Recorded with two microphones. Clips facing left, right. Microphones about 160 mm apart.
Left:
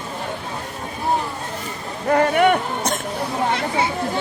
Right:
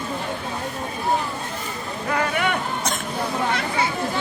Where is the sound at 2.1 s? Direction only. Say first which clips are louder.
Left 8 dB; 50° left (ahead or behind).